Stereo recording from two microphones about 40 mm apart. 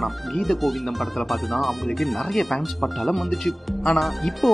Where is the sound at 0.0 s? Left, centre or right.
Centre.